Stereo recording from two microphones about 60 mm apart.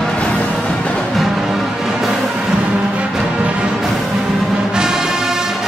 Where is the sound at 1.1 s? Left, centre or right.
Centre.